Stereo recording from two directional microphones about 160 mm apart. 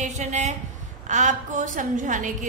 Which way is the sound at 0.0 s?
45° right (ahead or behind).